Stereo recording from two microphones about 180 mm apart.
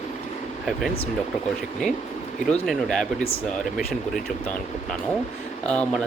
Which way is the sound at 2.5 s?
Centre (ahead or behind).